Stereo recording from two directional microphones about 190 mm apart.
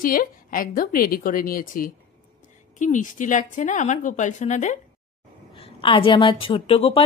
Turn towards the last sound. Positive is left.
turn(degrees=30)  # may be behind; listen again after turning